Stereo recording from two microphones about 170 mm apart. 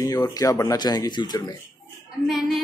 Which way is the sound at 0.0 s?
20° left (ahead or behind).